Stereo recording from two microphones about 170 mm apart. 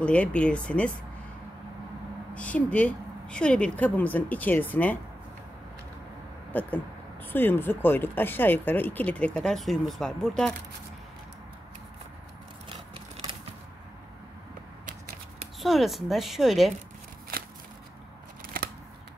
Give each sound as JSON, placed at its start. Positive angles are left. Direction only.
{"t": 0.0, "sound": "speech", "side_deg": 5}
{"t": 2.3, "sound": "speech", "side_deg": 5}
{"t": 6.5, "sound": "speech", "side_deg": 10}
{"t": 12.6, "sound": "a sound", "side_deg": -30}
{"t": 15.6, "sound": "a woman's voice", "side_deg": 0}